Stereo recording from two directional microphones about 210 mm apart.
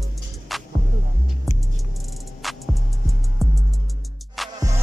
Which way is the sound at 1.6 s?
Centre (ahead or behind).